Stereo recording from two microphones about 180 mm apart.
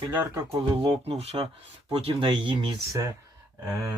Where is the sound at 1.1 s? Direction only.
35° right (ahead or behind).